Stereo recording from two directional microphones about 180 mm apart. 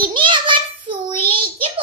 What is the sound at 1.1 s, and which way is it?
Child singing, 30° right (ahead or behind).